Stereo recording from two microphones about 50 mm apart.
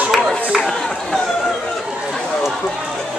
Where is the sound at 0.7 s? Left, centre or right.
Centre.